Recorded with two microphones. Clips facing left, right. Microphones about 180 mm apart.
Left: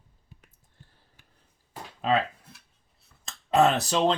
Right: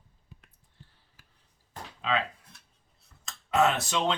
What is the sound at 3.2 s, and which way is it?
Speech, 35° left (ahead or behind).